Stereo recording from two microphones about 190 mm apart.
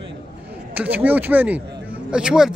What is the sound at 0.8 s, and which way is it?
A man's voice, 10° right (ahead or behind).